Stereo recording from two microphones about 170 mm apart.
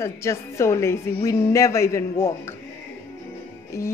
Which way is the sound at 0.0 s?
15° left (ahead or behind).